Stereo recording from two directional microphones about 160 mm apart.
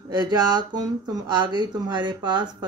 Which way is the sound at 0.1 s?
25° right (ahead or behind).